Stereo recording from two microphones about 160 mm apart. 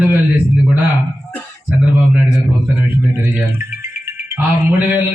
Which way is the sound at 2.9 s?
15° right (ahead or behind).